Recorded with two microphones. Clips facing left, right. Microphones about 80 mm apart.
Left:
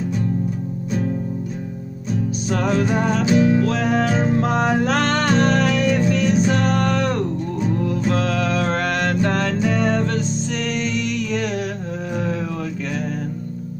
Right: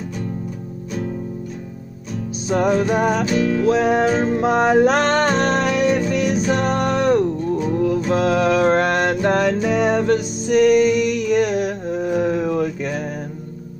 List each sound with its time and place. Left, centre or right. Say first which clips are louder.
2.5 s music: right 3 dB; centre
3.3 s music: left 3 dB; centre
3.6 s music: right 4 dB; right
5.2 s music: even; right
5.6 s music: right 1 dB; centre